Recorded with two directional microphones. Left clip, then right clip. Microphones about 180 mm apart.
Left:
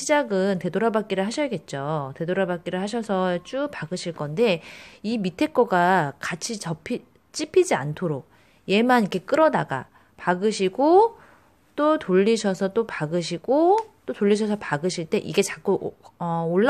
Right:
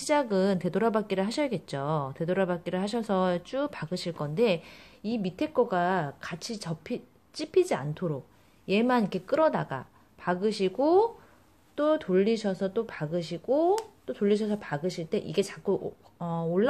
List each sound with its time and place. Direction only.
0.0 s a woman's voice: 15° left (ahead or behind)